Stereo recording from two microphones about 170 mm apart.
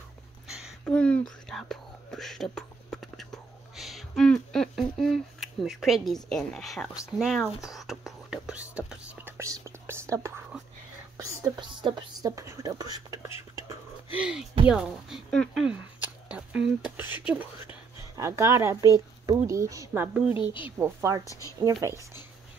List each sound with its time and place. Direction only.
0.5 s a sound: 5° right (ahead or behind)
1.5 s whispering: centre (ahead or behind)
6.2 s a sound: 5° left (ahead or behind); by 10.4 s 15° right (ahead or behind)
11.1 s whispering: 25° right (ahead or behind)
14.7 s a woman's voice: 5° right (ahead or behind)
21.3 s speech: 20° left (ahead or behind)
21.8 s speech: 20° right (ahead or behind)